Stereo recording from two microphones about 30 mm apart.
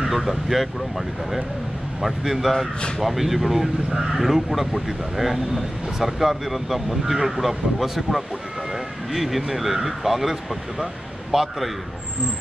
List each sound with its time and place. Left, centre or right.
0.1 s speech: centre